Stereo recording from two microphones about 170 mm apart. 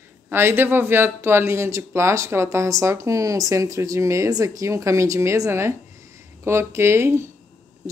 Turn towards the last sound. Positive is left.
turn(degrees=-15)  # may be behind; listen again after turning